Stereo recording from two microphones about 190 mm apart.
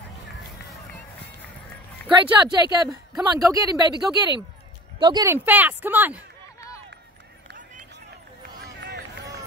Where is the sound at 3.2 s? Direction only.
20° right (ahead or behind).